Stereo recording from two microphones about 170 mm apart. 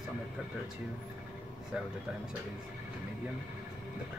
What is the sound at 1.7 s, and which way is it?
Speech, 5° right (ahead or behind).